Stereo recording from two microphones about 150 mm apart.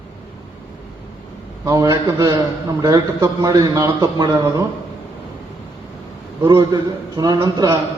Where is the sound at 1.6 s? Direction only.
20° right (ahead or behind).